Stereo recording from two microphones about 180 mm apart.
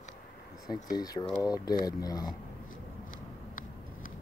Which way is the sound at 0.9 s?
20° left (ahead or behind).